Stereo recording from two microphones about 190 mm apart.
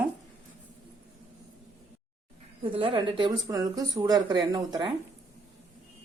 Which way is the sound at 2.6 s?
25° right (ahead or behind).